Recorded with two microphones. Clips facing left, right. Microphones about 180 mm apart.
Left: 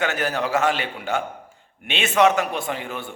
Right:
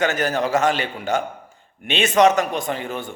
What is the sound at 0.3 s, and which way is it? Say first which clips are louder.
Speech: right 2 dB; 40° right (ahead or behind).